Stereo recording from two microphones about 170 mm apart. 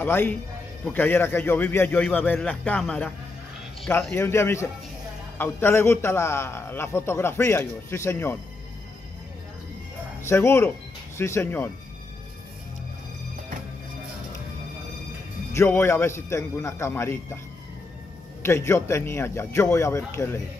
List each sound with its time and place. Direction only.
0.0 s a man's voice: 10° left (ahead or behind)
4.1 s a man's voice: 15° left (ahead or behind)
10.2 s a man's voice: 15° left (ahead or behind)
15.5 s a man's voice: 15° left (ahead or behind)
18.4 s a man's voice: 15° left (ahead or behind)